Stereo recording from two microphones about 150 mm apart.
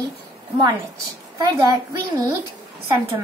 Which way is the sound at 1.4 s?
25° right (ahead or behind).